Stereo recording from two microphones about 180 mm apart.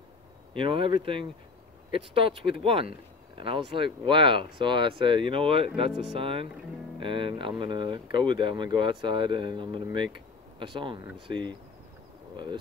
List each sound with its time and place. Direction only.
0.6 s speech: 30° right (ahead or behind)